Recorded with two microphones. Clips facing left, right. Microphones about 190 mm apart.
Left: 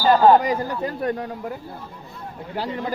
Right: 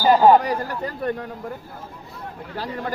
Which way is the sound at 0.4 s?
15° left (ahead or behind).